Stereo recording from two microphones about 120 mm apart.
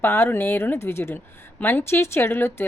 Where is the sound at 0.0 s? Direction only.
20° left (ahead or behind).